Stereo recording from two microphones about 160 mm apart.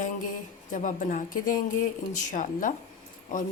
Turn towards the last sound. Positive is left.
turn(degrees=55)  # may be behind; listen again after turning